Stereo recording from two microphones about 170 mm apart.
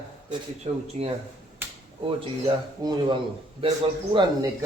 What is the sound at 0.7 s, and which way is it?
Speech, 35° right (ahead or behind).